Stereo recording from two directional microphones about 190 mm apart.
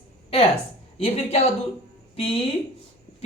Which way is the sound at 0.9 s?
30° left (ahead or behind).